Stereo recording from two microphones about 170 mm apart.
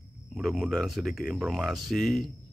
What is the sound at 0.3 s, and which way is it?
Speech, centre (ahead or behind).